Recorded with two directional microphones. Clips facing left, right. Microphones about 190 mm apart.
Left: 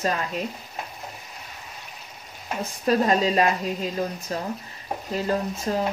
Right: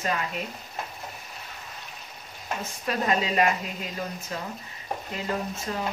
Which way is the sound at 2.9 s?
35° left (ahead or behind).